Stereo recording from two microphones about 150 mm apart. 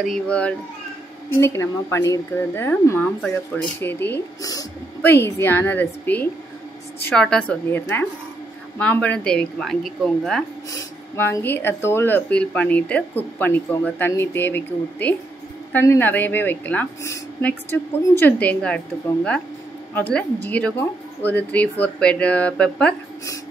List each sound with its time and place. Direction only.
0.0 s a woman's voice: 5° left (ahead or behind)
10.7 s speech: 20° left (ahead or behind)